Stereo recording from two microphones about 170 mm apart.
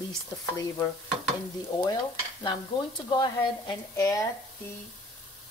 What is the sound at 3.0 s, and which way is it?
Speech, 25° left (ahead or behind).